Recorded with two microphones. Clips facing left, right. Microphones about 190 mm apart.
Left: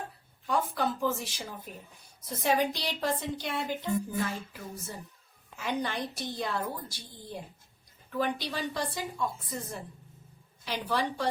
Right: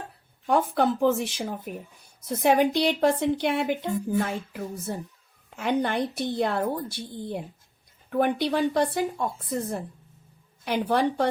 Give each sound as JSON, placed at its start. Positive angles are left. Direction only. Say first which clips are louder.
{"t": 0.4, "sound": "speech", "louder": "right 7 dB", "side_deg": -60}